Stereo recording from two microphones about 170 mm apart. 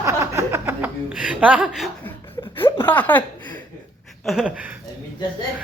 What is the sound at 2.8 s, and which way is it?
Speech, 10° left (ahead or behind).